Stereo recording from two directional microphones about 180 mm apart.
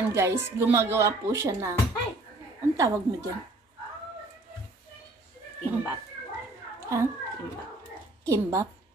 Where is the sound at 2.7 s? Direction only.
20° right (ahead or behind).